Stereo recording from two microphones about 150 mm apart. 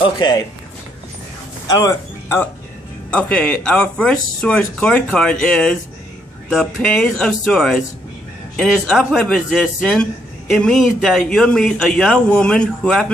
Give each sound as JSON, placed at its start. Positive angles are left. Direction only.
{"t": 1.7, "sound": "speech", "side_deg": 20}